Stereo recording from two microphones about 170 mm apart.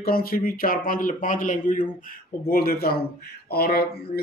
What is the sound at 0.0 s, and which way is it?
Speech, 60° left (ahead or behind).